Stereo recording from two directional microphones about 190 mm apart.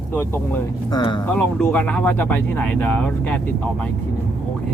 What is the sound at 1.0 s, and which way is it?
Speech, 25° left (ahead or behind).